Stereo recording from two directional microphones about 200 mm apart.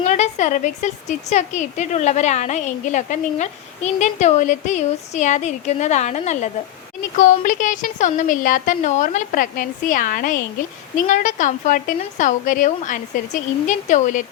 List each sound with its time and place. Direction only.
0.0 s a woman's voice: 35° left (ahead or behind)